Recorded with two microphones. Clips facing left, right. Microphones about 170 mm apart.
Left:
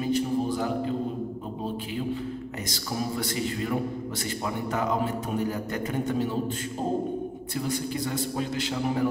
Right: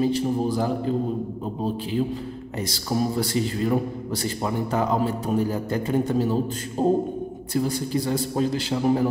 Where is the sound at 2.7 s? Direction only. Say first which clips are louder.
Right 7 dB; 35° right (ahead or behind).